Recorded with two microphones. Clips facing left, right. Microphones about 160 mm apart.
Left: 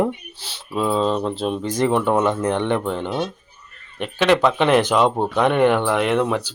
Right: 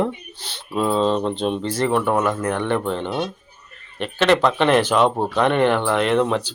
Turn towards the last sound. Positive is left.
turn(degrees=10)  # may be behind; listen again after turning